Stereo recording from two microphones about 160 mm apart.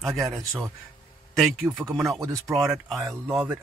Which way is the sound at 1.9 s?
Centre (ahead or behind).